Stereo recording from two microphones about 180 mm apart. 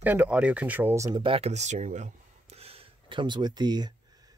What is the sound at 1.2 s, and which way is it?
Speech, 30° right (ahead or behind).